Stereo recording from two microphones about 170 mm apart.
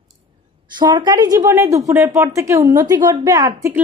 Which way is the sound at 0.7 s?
25° right (ahead or behind).